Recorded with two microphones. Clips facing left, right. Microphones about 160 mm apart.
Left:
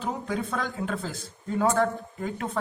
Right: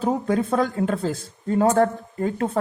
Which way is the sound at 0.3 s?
40° right (ahead or behind).